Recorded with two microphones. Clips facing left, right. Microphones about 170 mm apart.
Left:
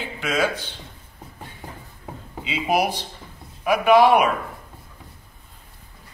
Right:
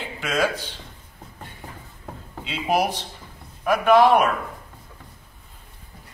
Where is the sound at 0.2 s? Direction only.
Centre (ahead or behind).